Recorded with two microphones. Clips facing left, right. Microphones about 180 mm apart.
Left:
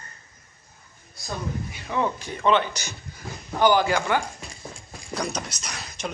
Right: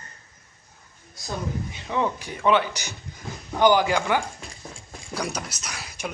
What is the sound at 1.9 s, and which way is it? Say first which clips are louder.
Speech: even; 15° right (ahead or behind).